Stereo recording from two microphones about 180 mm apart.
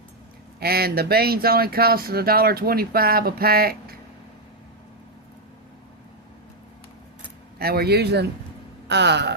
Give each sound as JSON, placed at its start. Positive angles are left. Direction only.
{"t": 0.6, "sound": "speech", "side_deg": -60}
{"t": 7.6, "sound": "speech", "side_deg": -60}